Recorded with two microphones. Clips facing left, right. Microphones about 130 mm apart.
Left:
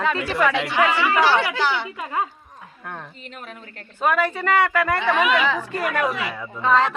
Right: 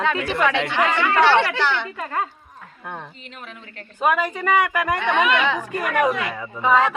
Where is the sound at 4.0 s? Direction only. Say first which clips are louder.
Even; 15° right (ahead or behind).